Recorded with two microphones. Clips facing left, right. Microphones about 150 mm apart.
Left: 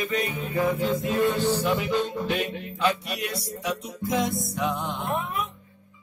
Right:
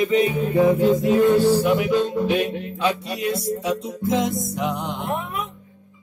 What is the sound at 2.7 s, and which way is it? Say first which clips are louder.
Music: left 1 dB; 25° right (ahead or behind).